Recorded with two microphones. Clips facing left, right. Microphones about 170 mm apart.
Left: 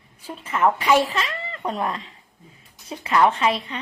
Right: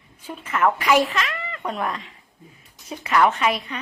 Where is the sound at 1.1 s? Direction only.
30° left (ahead or behind).